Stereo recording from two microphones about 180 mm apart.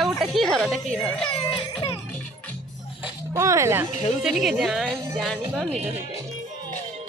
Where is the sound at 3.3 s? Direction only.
15° right (ahead or behind).